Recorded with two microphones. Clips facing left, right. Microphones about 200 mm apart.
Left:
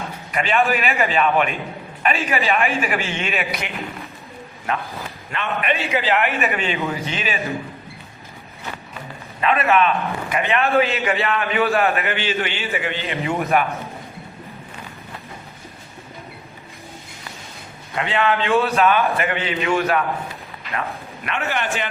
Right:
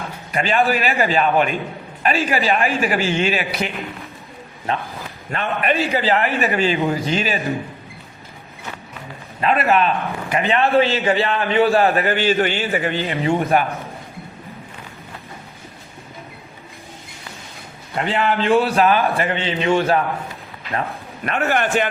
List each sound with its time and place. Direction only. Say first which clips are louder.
0.3 s a man's voice: right 1 dB; 35° right (ahead or behind)
4.7 s a man's voice: right 1 dB; 30° right (ahead or behind)
9.4 s a man's voice: right 1 dB; 30° right (ahead or behind)
13.1 s a man's voice: right 2 dB; 30° right (ahead or behind)
17.9 s a man's voice: right 1 dB; 35° right (ahead or behind)
21.2 s a man's voice: right 5 dB; 45° right (ahead or behind)